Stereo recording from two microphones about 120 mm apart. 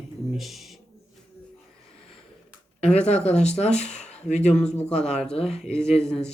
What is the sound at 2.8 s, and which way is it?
Speech, 65° left (ahead or behind).